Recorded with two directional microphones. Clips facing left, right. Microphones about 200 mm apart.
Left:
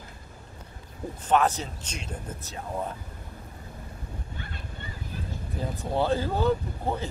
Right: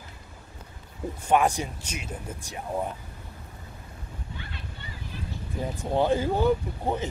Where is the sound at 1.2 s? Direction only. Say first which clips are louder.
Right 1 dB; 10° right (ahead or behind).